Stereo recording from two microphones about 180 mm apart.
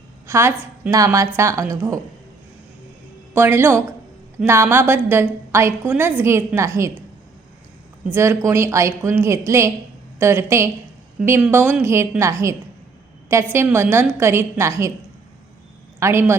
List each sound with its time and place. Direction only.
0.3 s a woman's voice: 15° right (ahead or behind)
3.3 s a woman's voice: 15° right (ahead or behind)
8.1 s a woman's voice: 15° right (ahead or behind)
16.0 s speech: 15° right (ahead or behind)